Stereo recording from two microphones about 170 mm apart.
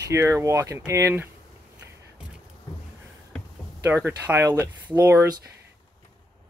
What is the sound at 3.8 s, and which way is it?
Speech, 10° right (ahead or behind).